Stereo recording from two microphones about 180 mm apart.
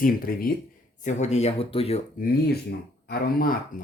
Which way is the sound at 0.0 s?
55° left (ahead or behind).